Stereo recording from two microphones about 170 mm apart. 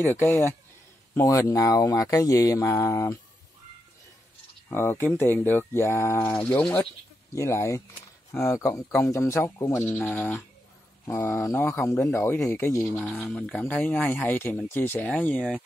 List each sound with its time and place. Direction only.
0.0 s speech: 15° left (ahead or behind)
4.6 s speech: 15° left (ahead or behind)